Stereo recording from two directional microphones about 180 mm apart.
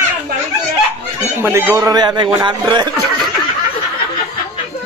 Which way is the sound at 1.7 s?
20° right (ahead or behind).